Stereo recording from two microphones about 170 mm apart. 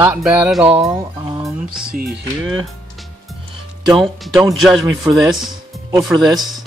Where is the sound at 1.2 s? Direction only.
25° right (ahead or behind).